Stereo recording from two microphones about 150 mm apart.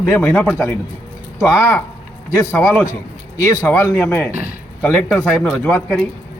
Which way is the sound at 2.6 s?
5° left (ahead or behind).